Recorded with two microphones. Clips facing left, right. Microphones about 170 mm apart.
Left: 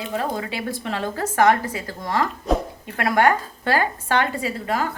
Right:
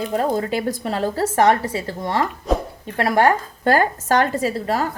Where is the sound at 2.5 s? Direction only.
Centre (ahead or behind).